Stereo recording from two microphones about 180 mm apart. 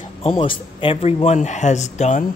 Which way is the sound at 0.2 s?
30° left (ahead or behind).